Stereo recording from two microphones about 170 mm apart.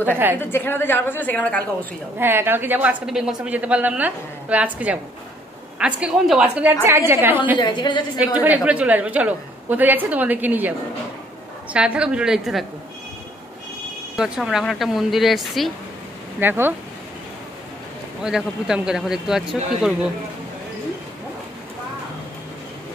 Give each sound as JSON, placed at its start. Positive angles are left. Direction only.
{"t": 0.4, "sound": "a woman's voice", "side_deg": 10}
{"t": 2.1, "sound": "a woman's voice", "side_deg": -10}
{"t": 7.5, "sound": "a woman's voice", "side_deg": 25}
{"t": 8.4, "sound": "a woman's voice", "side_deg": -10}
{"t": 11.7, "sound": "speech", "side_deg": -5}
{"t": 14.1, "sound": "speech", "side_deg": -5}
{"t": 16.3, "sound": "a woman's voice", "side_deg": -10}
{"t": 18.2, "sound": "speech", "side_deg": -5}